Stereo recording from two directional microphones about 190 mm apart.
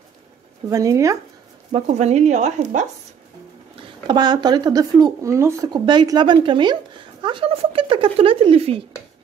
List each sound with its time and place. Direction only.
0.7 s speech: 20° right (ahead or behind)
1.7 s speech: 35° right (ahead or behind)
4.1 s speech: 20° right (ahead or behind)